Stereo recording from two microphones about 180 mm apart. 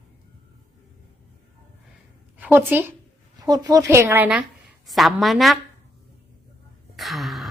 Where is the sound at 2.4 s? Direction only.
10° right (ahead or behind).